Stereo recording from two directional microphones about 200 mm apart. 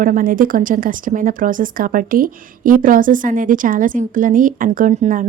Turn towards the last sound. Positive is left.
turn(degrees=-40)  # may be behind; listen again after turning